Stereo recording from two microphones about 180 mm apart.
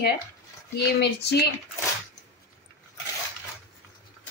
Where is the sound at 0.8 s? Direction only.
65° left (ahead or behind).